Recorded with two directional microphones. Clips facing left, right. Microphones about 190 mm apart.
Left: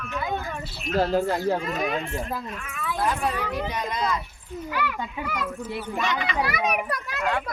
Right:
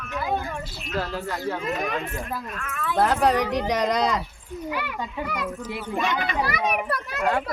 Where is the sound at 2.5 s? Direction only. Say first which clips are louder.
Right 2 dB; 10° left (ahead or behind).